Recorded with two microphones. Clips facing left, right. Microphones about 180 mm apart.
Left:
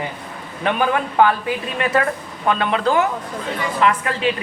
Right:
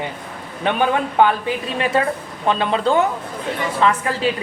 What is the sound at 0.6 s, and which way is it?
A woman's voice, 25° right (ahead or behind).